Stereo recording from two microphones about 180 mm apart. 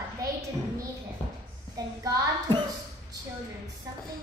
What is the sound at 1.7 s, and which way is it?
Speech, 20° right (ahead or behind).